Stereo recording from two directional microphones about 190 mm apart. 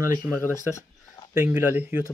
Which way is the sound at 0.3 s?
15° right (ahead or behind).